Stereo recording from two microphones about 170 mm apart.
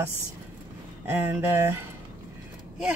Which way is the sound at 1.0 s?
15° right (ahead or behind).